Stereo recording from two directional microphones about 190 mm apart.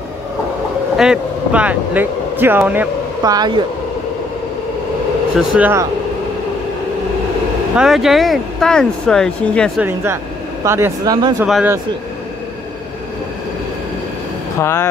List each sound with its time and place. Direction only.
0.9 s speech: 5° right (ahead or behind); by 3.6 s 20° right (ahead or behind)
5.6 s speech: 10° right (ahead or behind)
7.7 s speech: centre (ahead or behind)
9.8 s speech: 10° right (ahead or behind)
11.4 s speech: 5° right (ahead or behind)
14.6 s speech: 15° left (ahead or behind)